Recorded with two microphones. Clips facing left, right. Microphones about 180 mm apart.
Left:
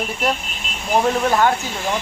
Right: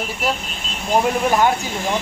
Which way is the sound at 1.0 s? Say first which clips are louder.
Left 1 dB; 15° right (ahead or behind).